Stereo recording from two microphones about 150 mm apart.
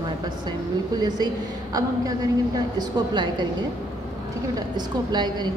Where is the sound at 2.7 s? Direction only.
30° right (ahead or behind).